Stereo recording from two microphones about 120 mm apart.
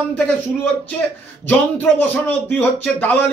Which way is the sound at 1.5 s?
15° left (ahead or behind).